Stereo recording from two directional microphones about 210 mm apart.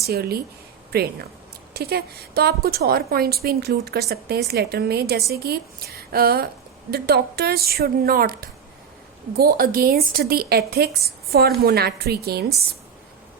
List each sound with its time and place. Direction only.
0.1 s a woman's voice: 50° right (ahead or behind)